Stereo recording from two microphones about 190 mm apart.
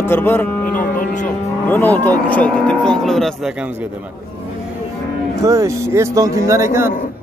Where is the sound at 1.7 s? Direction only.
10° left (ahead or behind).